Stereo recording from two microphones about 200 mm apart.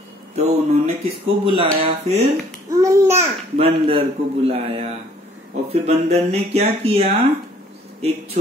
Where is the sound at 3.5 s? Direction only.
30° right (ahead or behind).